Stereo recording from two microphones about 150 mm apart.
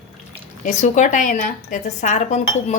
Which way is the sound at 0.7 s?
50° left (ahead or behind).